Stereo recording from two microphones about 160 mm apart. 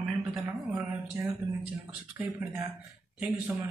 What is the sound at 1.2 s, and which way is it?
A man's voice, 15° right (ahead or behind).